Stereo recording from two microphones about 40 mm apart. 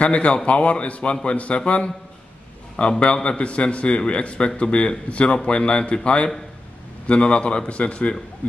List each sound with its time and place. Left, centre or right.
0.0 s a man's voice: left
2.7 s a man's voice: left